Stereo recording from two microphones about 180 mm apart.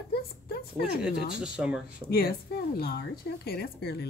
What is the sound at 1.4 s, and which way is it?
Speech, 5° right (ahead or behind).